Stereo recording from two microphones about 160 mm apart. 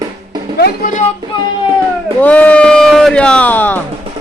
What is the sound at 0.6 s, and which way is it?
Speech, 65° left (ahead or behind).